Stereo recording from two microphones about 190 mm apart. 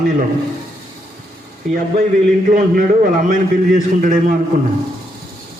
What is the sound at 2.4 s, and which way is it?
A man's voice, 45° right (ahead or behind).